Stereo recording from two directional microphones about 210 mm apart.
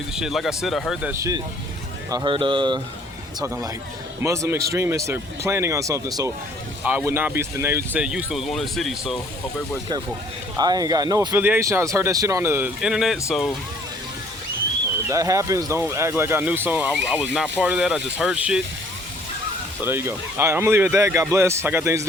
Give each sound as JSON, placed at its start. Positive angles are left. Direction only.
{"t": 0.2, "sound": "speech", "side_deg": 0}
{"t": 2.0, "sound": "speech", "side_deg": -20}
{"t": 10.6, "sound": "speech", "side_deg": -20}
{"t": 15.1, "sound": "speech", "side_deg": -15}
{"t": 19.8, "sound": "speech", "side_deg": -10}